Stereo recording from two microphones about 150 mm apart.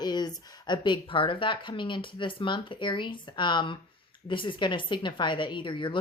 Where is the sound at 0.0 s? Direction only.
25° left (ahead or behind).